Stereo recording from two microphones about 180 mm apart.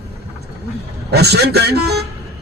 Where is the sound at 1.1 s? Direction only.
65° right (ahead or behind).